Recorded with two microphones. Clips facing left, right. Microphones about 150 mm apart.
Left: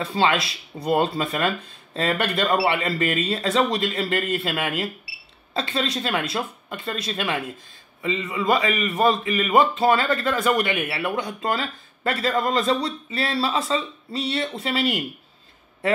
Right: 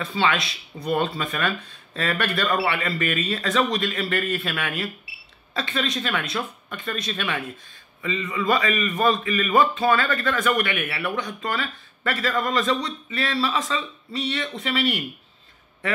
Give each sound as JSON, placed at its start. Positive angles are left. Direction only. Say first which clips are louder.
{"t": 0.0, "sound": "a man's voice", "louder": "left 2 dB", "side_deg": 30}